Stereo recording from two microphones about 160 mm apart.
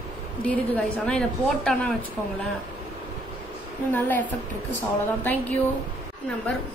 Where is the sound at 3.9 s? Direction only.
10° left (ahead or behind).